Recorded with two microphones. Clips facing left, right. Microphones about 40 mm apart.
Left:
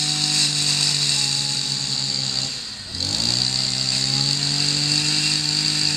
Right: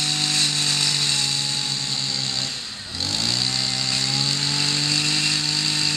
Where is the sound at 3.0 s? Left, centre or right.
Right.